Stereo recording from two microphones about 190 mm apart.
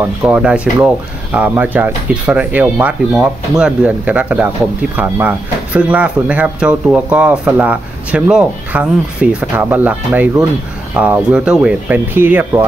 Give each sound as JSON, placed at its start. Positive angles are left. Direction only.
{"t": 0.0, "sound": "speech", "side_deg": -5}